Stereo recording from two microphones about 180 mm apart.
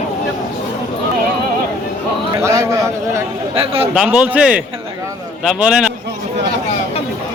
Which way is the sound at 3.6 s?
30° right (ahead or behind).